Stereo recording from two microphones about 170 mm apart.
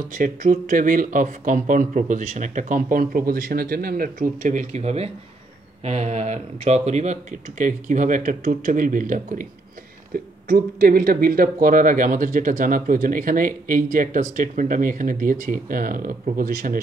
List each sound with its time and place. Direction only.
0.1 s speech: 50° right (ahead or behind)